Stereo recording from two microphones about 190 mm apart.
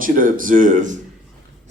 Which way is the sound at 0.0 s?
45° right (ahead or behind).